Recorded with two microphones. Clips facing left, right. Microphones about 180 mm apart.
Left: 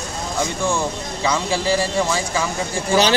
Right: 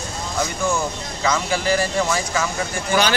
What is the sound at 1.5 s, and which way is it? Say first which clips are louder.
Speech: left 1 dB; 30° left (ahead or behind).